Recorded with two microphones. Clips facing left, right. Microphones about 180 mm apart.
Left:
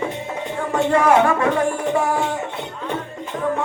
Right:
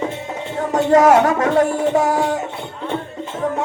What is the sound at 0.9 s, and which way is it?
Speech, 40° right (ahead or behind).